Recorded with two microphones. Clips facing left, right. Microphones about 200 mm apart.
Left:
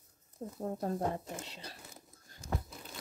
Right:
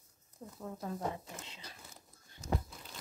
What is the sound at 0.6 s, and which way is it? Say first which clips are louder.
Speech: left 5 dB; 40° left (ahead or behind).